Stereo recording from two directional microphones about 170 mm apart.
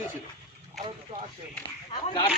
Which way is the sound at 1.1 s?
50° right (ahead or behind).